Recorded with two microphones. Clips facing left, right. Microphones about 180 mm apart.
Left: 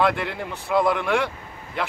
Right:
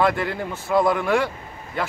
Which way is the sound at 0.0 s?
Centre (ahead or behind).